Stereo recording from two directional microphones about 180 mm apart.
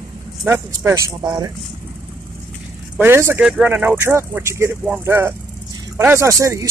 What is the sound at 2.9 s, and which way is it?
Speech, 15° right (ahead or behind).